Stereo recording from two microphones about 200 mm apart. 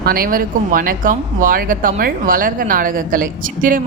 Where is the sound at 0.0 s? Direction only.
45° right (ahead or behind).